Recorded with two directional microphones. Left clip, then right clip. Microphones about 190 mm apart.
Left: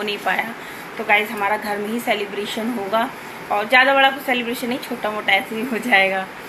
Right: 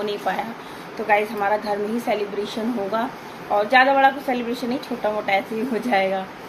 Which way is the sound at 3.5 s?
Centre (ahead or behind).